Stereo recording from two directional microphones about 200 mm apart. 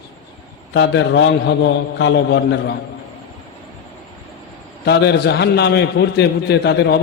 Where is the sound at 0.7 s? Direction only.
60° left (ahead or behind).